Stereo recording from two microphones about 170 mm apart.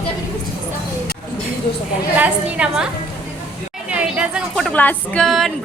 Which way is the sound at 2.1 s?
10° right (ahead or behind).